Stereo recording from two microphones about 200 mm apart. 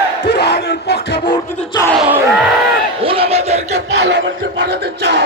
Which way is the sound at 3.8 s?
60° right (ahead or behind).